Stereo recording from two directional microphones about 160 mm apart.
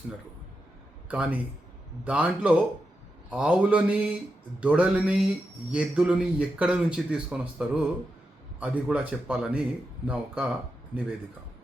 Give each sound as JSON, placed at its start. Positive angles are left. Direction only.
{"t": 1.0, "sound": "a man's voice", "side_deg": -5}